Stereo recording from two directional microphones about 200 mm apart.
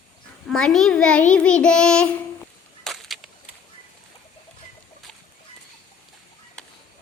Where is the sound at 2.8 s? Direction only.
Centre (ahead or behind).